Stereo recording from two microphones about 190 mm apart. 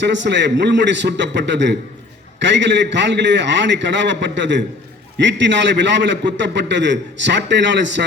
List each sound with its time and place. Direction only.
0.0 s a man's voice: 70° right (ahead or behind)